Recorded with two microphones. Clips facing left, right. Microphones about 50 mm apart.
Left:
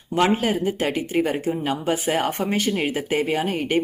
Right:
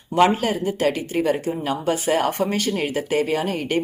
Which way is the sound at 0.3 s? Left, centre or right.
Centre.